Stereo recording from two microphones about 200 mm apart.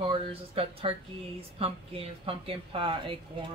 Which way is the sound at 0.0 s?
25° right (ahead or behind).